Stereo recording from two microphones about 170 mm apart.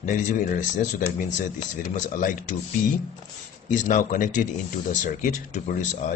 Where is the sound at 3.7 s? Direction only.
50° left (ahead or behind).